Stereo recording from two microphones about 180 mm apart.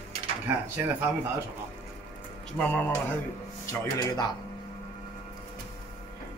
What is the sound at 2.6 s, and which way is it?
Speech, 10° left (ahead or behind).